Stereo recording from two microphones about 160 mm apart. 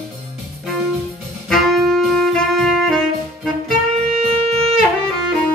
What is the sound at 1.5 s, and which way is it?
Saxophone, centre (ahead or behind).